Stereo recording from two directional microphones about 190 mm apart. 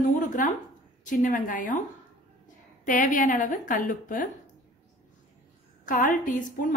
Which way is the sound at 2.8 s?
45° left (ahead or behind).